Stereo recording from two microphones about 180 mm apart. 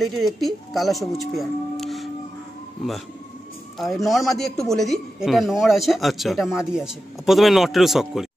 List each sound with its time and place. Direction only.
0.0 s a man's voice: centre (ahead or behind)
3.7 s a man's voice: centre (ahead or behind)